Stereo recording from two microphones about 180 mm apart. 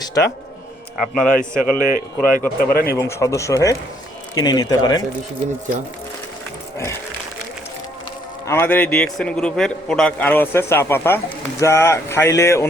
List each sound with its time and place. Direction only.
0.0 s speech: 20° left (ahead or behind)
0.9 s a man's voice: centre (ahead or behind)
1.7 s a man's voice: 50° left (ahead or behind)
3.0 s a man's voice: 15° left (ahead or behind)
8.4 s a man's voice: 10° left (ahead or behind)